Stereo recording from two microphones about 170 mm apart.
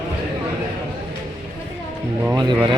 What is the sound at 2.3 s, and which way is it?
Music, 25° right (ahead or behind).